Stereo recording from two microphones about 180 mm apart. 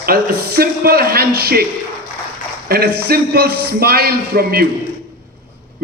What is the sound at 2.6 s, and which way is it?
A man's voice, 60° right (ahead or behind).